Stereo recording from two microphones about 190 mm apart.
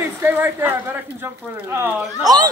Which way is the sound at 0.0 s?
10° right (ahead or behind).